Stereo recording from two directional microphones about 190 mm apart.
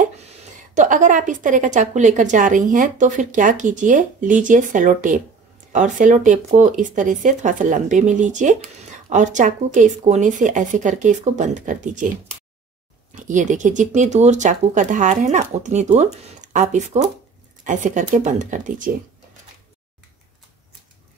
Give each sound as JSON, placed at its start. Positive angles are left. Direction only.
{"t": 0.0, "sound": "a woman's voice", "side_deg": -40}
{"t": 13.1, "sound": "speech", "side_deg": -40}